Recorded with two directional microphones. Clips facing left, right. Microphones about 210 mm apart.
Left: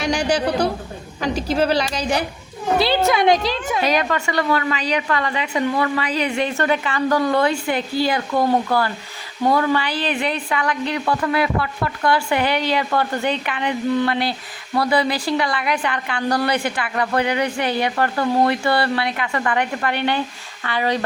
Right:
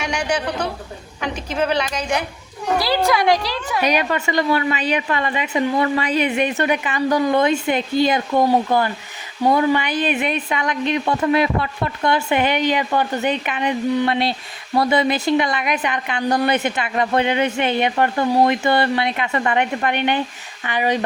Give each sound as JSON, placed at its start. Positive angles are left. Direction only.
{"t": 0.0, "sound": "a man's voice", "side_deg": 35}
{"t": 2.7, "sound": "a woman's voice", "side_deg": 25}
{"t": 3.8, "sound": "a woman's voice", "side_deg": -15}